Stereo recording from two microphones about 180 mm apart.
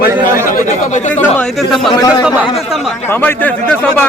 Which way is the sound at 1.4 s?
Centre (ahead or behind).